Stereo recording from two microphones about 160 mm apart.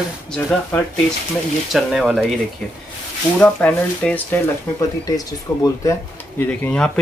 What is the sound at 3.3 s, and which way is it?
Speech, 10° left (ahead or behind).